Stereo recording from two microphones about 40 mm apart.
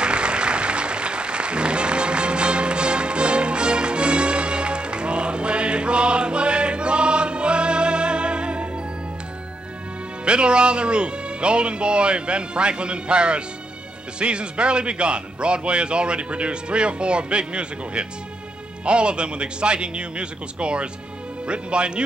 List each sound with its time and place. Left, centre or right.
0.0 s applause: right
10.2 s speech: right